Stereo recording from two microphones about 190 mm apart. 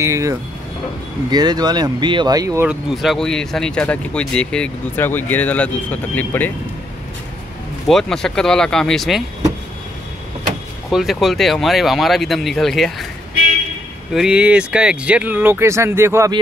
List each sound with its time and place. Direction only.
0.0 s speech: 15° right (ahead or behind)
2.9 s speech: centre (ahead or behind)
7.9 s speech: centre (ahead or behind)
10.9 s speech: centre (ahead or behind)
14.1 s speech: 5° right (ahead or behind)